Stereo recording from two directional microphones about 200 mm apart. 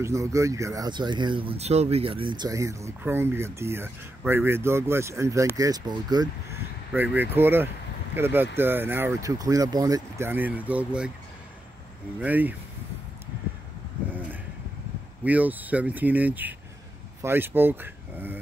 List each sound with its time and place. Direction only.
0.0 s speech: 15° right (ahead or behind)
6.9 s speech: 10° right (ahead or behind)
12.2 s speech: 10° right (ahead or behind)
15.2 s speech: 10° right (ahead or behind)